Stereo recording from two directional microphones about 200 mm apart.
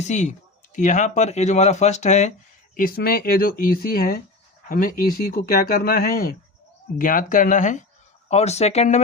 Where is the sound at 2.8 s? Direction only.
45° left (ahead or behind).